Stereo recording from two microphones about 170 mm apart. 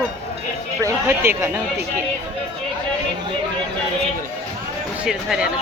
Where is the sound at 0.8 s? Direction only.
15° right (ahead or behind).